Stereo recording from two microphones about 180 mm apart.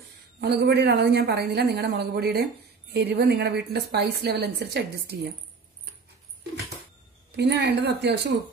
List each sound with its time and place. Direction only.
0.4 s a woman's voice: 70° right (ahead or behind)
7.3 s a woman's voice: 65° right (ahead or behind)